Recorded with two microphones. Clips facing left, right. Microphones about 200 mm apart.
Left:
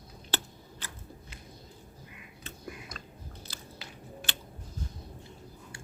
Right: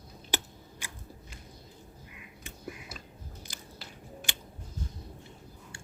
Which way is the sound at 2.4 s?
5° right (ahead or behind).